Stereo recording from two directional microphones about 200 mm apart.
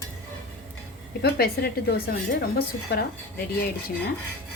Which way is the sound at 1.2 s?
50° left (ahead or behind).